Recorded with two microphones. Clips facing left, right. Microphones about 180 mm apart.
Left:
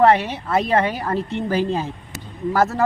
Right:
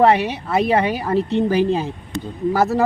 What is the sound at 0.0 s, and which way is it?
Speech, 10° right (ahead or behind).